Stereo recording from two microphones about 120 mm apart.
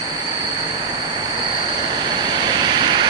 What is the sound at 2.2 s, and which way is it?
Vehicle, 35° right (ahead or behind).